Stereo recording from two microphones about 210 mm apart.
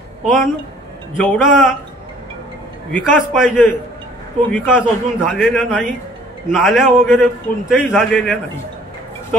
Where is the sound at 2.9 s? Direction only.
Centre (ahead or behind).